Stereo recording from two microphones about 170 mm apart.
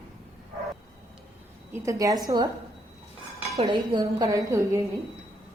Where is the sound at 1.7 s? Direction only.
20° right (ahead or behind).